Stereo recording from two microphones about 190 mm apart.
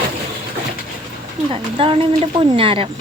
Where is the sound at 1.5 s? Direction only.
30° right (ahead or behind).